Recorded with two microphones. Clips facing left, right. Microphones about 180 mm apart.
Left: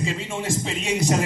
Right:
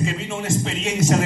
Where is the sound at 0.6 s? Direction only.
15° left (ahead or behind).